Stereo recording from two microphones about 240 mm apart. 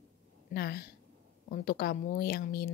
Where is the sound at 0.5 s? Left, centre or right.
Left.